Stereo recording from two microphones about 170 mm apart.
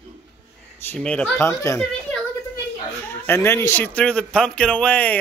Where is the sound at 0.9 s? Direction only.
5° left (ahead or behind).